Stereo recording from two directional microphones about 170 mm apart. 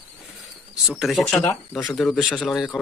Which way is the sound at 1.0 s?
Centre (ahead or behind).